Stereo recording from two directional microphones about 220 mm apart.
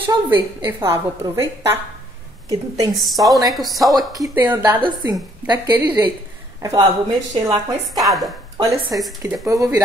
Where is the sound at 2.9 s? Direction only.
Centre (ahead or behind).